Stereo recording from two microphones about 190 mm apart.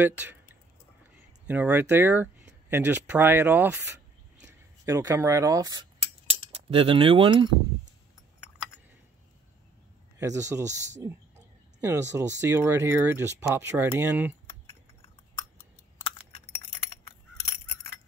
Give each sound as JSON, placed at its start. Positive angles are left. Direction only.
{"t": 0.0, "sound": "speech", "side_deg": -10}
{"t": 4.8, "sound": "speech", "side_deg": -15}
{"t": 10.1, "sound": "speech", "side_deg": -15}
{"t": 11.8, "sound": "speech", "side_deg": -15}